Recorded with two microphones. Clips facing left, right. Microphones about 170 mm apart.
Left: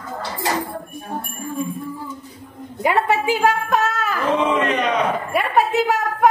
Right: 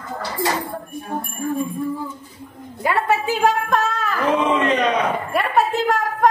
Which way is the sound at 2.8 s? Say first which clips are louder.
Left 1 dB; 15° left (ahead or behind).